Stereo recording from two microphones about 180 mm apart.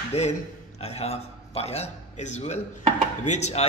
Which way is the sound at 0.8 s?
35° left (ahead or behind).